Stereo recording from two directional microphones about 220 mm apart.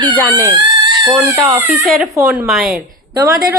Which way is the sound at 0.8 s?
20° right (ahead or behind).